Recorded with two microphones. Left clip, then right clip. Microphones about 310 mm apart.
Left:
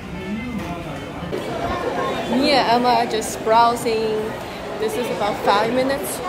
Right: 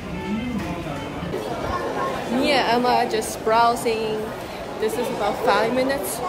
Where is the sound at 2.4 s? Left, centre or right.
Centre.